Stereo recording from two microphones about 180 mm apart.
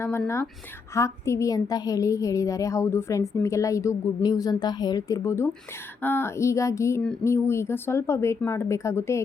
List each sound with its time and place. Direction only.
0.9 s a woman's voice: 15° left (ahead or behind)